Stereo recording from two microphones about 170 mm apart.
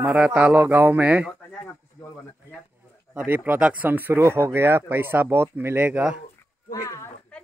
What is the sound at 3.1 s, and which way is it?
Speech, 10° right (ahead or behind).